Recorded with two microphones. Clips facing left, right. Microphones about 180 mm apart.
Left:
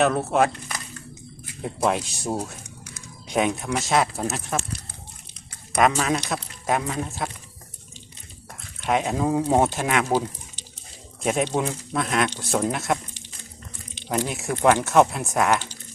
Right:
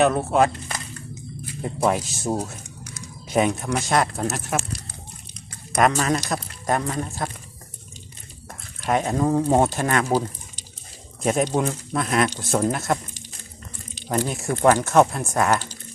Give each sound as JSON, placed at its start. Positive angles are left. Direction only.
{"t": 0.0, "sound": "speech", "side_deg": 0}
{"t": 1.6, "sound": "speech", "side_deg": 0}
{"t": 5.7, "sound": "speech", "side_deg": 0}
{"t": 8.8, "sound": "speech", "side_deg": 0}
{"t": 11.2, "sound": "speech", "side_deg": 0}
{"t": 14.2, "sound": "speech", "side_deg": 0}